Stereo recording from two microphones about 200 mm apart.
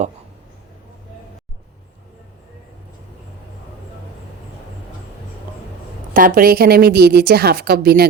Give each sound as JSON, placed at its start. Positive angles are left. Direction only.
{"t": 6.1, "sound": "a woman's voice", "side_deg": -45}